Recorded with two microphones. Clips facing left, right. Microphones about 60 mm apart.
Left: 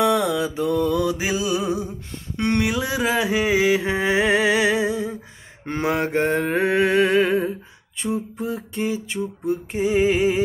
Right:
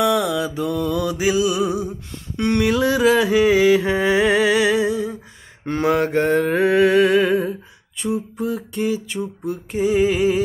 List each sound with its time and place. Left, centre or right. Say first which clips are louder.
0.0 s mantra: right 1 dB; left
2.3 s speech: right 2 dB; left
2.6 s a sound: right 6 dB; centre